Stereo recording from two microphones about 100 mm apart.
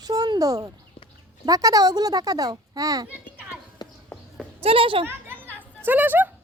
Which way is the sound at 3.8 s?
45° left (ahead or behind).